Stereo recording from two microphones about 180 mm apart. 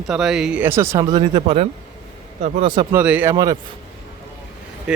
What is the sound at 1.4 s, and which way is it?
A man's voice, 35° right (ahead or behind).